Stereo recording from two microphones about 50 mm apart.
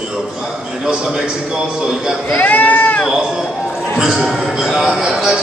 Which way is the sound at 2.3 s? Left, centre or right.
Left.